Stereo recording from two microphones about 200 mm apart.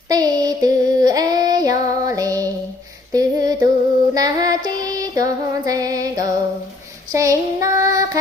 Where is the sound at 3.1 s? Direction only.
20° right (ahead or behind).